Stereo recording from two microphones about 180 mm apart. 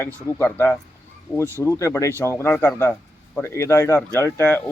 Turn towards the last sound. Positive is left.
turn(degrees=10)  # may be behind; listen again after turning